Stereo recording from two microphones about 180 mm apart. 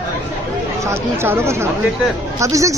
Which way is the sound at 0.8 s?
15° right (ahead or behind).